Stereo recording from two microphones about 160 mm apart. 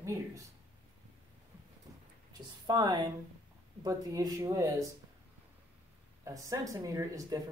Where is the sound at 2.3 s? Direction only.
25° right (ahead or behind).